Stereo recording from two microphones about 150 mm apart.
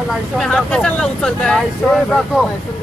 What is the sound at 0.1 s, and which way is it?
Speech, 5° left (ahead or behind).